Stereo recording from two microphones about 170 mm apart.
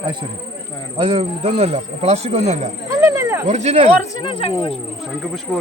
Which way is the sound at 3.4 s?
40° right (ahead or behind).